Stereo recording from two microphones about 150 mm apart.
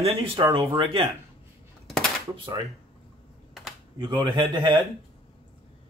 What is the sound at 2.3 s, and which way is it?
Speech, 35° right (ahead or behind).